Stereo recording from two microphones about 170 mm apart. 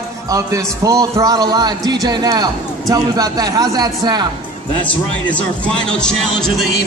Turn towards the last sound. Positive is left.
turn(degrees=5)  # may be behind; listen again after turning